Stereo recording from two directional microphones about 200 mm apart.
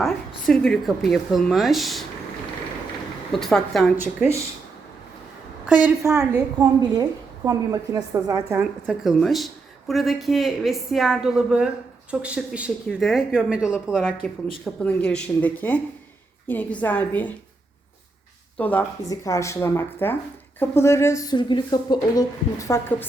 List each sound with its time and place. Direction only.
0.0 s speech: centre (ahead or behind)
3.3 s speech: centre (ahead or behind)
5.6 s a woman's voice: 5° right (ahead or behind)
18.5 s speech: 10° left (ahead or behind)